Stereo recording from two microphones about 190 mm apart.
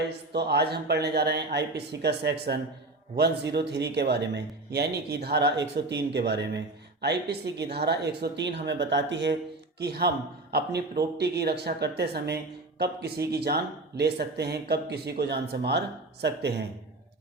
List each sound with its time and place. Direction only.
0.3 s speech: 60° right (ahead or behind)
9.7 s speech: 55° right (ahead or behind)